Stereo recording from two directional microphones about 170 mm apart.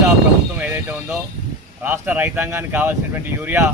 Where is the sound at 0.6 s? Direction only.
10° right (ahead or behind).